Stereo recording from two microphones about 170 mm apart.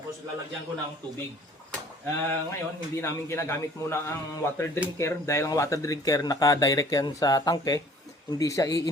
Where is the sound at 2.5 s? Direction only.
15° left (ahead or behind).